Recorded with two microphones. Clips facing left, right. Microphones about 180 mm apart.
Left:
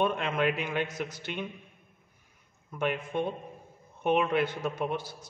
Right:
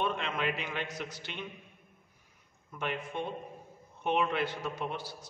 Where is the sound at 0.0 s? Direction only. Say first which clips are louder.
Left 5 dB; 50° left (ahead or behind).